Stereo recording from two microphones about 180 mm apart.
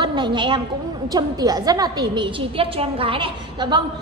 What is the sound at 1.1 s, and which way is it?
A woman's voice, 20° right (ahead or behind).